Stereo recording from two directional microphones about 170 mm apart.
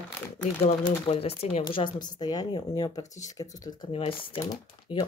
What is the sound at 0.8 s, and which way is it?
Speech, 35° left (ahead or behind).